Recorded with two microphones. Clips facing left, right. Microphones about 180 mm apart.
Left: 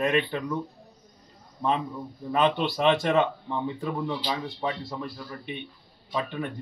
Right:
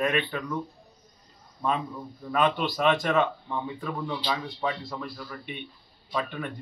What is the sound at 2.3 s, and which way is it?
A man's voice, 25° left (ahead or behind).